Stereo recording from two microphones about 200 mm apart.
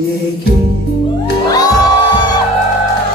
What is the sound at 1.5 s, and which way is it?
Music, 20° left (ahead or behind).